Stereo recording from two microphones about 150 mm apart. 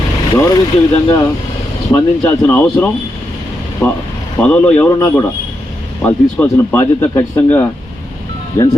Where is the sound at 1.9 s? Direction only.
15° left (ahead or behind).